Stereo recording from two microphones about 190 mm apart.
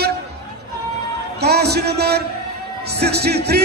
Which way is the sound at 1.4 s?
60° right (ahead or behind).